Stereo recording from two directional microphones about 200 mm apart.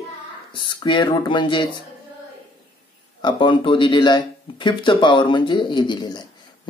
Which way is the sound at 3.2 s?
25° left (ahead or behind).